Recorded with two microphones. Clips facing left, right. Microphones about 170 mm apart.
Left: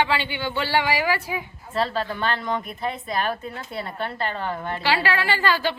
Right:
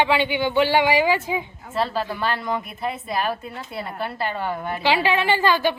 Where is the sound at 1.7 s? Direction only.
5° right (ahead or behind).